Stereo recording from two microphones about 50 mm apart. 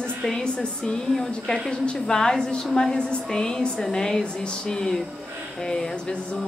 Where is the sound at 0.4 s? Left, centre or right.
Centre.